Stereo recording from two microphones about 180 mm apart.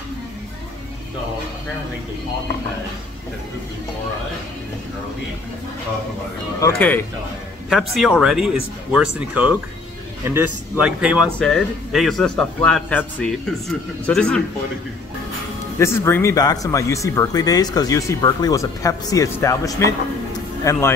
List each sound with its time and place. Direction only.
6.8 s speech: 10° left (ahead or behind)
7.7 s a man's voice: centre (ahead or behind)
15.8 s speech: 15° left (ahead or behind)
20.3 s a sound: 20° left (ahead or behind)